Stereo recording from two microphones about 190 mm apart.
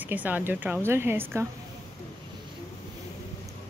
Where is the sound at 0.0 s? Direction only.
10° right (ahead or behind).